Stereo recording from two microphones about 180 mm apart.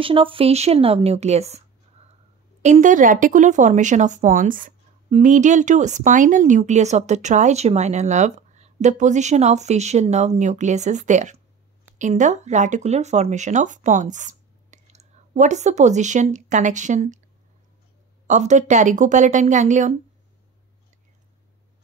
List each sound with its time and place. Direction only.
0.0 s speech: 30° right (ahead or behind)
2.6 s speech: 45° right (ahead or behind)
18.2 s speech: 40° right (ahead or behind)